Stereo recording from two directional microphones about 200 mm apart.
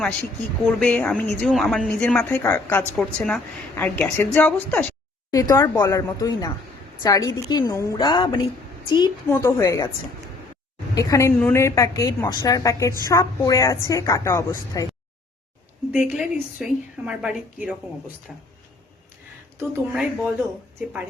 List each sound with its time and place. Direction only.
0.0 s a woman's voice: 5° left (ahead or behind)
10.9 s a woman's voice: 15° left (ahead or behind)
15.9 s a woman's voice: 5° right (ahead or behind)
18.3 s speech: centre (ahead or behind)
19.5 s speech: 5° right (ahead or behind)